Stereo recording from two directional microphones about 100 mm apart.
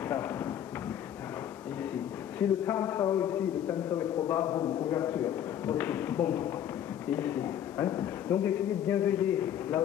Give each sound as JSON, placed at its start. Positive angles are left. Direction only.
{"t": 2.3, "sound": "a man's voice", "side_deg": 20}
{"t": 4.6, "sound": "a man's voice", "side_deg": 35}
{"t": 4.9, "sound": "a man's voice", "side_deg": 25}